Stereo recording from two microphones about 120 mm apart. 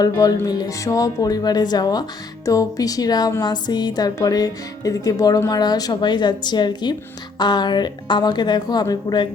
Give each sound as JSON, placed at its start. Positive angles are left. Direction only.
{"t": 0.0, "sound": "speech", "side_deg": 30}